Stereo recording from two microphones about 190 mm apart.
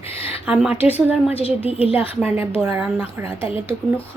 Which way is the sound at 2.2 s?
10° right (ahead or behind).